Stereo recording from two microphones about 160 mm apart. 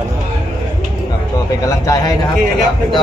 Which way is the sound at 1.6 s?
20° left (ahead or behind).